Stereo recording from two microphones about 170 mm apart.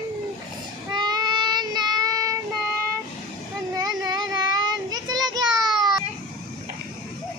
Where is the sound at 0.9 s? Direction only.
25° right (ahead or behind).